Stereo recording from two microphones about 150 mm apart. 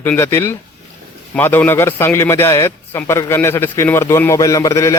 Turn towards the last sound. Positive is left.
turn(degrees=20)  # may be behind; listen again after turning